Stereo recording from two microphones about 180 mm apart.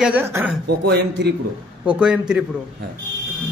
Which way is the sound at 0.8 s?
75° right (ahead or behind).